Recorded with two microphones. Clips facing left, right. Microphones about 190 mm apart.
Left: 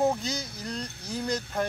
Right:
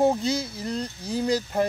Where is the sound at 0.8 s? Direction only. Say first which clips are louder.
Right 6 dB; 30° right (ahead or behind).